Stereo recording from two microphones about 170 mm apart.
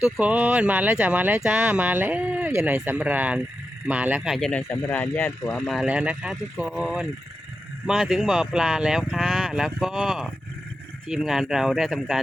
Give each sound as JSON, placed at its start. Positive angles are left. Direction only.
{"t": 0.2, "sound": "speech", "side_deg": -10}